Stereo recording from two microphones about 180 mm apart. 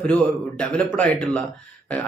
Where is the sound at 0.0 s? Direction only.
5° left (ahead or behind).